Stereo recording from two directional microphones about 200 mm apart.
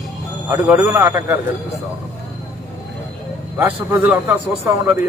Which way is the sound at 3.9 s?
10° right (ahead or behind).